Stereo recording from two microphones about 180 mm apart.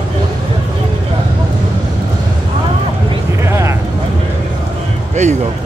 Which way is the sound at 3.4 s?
15° right (ahead or behind).